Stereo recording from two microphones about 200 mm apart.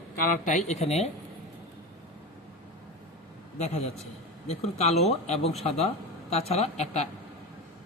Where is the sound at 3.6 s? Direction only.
35° left (ahead or behind).